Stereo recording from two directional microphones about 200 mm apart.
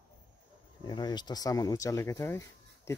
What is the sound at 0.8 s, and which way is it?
Speech, 20° left (ahead or behind).